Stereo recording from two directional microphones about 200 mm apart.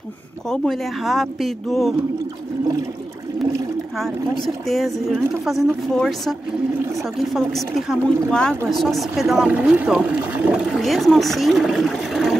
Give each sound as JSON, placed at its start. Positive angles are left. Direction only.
{"t": 0.5, "sound": "speech", "side_deg": 0}
{"t": 3.9, "sound": "speech", "side_deg": 0}